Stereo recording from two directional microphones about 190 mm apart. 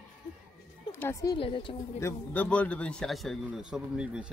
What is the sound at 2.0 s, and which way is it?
A man's voice, 10° left (ahead or behind).